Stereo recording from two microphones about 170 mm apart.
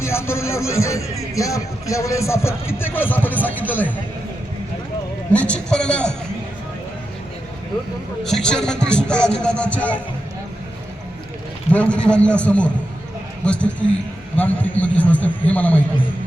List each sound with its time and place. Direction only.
0.0 s speech: 15° left (ahead or behind)
5.3 s speech: 5° left (ahead or behind)
8.2 s speech: 5° left (ahead or behind)
11.7 s speech: 5° left (ahead or behind)